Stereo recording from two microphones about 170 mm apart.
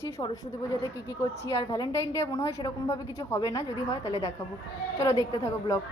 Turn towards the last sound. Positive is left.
turn(degrees=15)  # may be behind; listen again after turning